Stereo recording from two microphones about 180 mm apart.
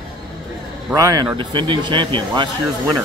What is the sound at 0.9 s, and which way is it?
Speech, 20° right (ahead or behind).